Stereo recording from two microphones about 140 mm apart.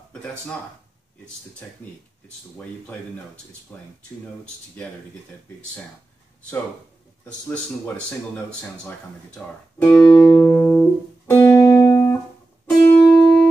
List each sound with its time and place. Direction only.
0.1 s speech: 10° left (ahead or behind)
10.0 s music: 30° left (ahead or behind)
10.5 s music: 10° left (ahead or behind)
11.2 s music: 25° left (ahead or behind)
12.6 s music: centre (ahead or behind)